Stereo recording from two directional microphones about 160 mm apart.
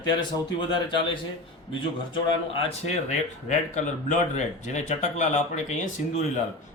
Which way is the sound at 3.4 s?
50° left (ahead or behind).